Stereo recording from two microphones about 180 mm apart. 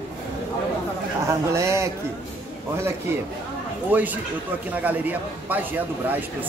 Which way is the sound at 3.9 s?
10° right (ahead or behind).